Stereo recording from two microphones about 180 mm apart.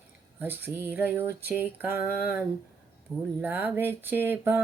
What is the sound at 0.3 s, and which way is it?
Speech, 10° right (ahead or behind).